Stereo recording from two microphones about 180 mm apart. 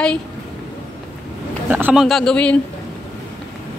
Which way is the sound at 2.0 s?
5° left (ahead or behind).